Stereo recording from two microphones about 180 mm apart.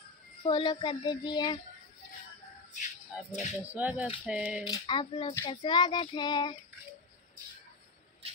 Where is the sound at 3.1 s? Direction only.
5° right (ahead or behind).